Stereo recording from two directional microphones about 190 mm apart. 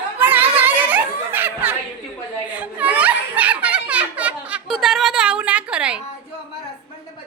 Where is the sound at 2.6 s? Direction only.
5° right (ahead or behind).